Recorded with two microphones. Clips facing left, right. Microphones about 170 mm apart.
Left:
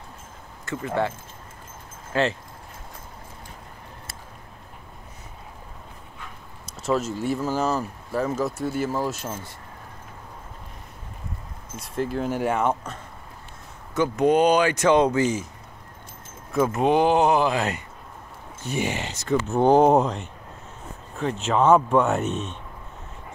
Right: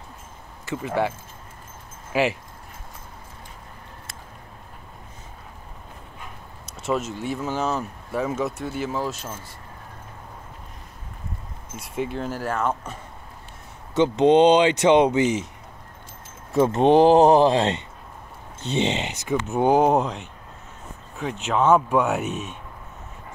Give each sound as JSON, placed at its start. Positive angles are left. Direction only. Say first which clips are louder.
{"t": 0.7, "sound": "speech", "louder": "right 1 dB", "side_deg": -15}
{"t": 2.1, "sound": "speech", "louder": "right 1 dB", "side_deg": -10}
{"t": 7.1, "sound": "speech", "louder": "left 3 dB", "side_deg": 40}
{"t": 7.3, "sound": "speech", "louder": "even", "side_deg": 5}
{"t": 11.8, "sound": "speech", "louder": "left 1 dB", "side_deg": 0}
{"t": 12.4, "sound": "speech", "louder": "left 2 dB", "side_deg": 15}
{"t": 13.9, "sound": "speech", "louder": "right 3 dB", "side_deg": -25}
{"t": 16.5, "sound": "speech", "louder": "right 4 dB", "side_deg": -30}
{"t": 21.5, "sound": "speech", "louder": "left 1 dB", "side_deg": 0}